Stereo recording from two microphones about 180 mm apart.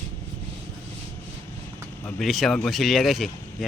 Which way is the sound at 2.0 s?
Centre (ahead or behind).